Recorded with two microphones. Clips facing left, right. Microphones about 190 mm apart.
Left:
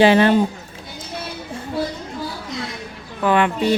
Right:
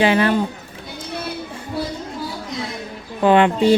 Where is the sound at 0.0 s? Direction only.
30° left (ahead or behind).